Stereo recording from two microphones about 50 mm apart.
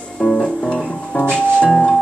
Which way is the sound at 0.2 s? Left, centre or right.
Centre.